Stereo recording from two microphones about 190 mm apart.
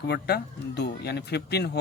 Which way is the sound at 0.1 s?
60° left (ahead or behind).